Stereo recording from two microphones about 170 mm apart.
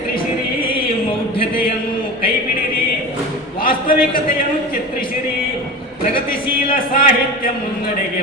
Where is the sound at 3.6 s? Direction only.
55° left (ahead or behind).